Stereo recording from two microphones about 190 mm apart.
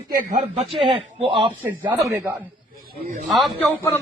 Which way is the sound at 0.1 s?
45° right (ahead or behind).